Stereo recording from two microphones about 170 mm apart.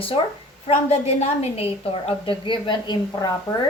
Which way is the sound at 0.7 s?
40° left (ahead or behind).